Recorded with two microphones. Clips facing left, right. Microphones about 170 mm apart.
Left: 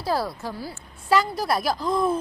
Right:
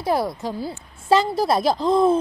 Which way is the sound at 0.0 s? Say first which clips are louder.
Right 4 dB; 20° right (ahead or behind).